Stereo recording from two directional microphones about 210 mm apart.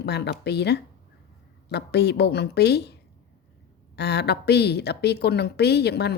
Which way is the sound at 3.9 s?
50° left (ahead or behind).